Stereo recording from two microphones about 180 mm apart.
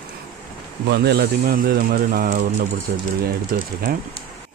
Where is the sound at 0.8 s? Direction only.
70° right (ahead or behind).